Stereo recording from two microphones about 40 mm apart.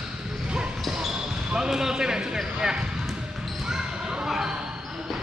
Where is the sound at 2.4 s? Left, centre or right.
Centre.